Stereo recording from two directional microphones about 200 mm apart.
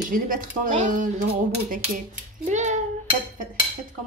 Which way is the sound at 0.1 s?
40° right (ahead or behind).